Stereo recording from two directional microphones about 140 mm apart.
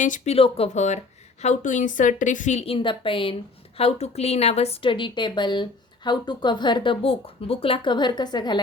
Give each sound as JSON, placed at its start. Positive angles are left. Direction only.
{"t": 0.0, "sound": "a woman's voice", "side_deg": 65}
{"t": 0.3, "sound": "a woman's voice", "side_deg": 40}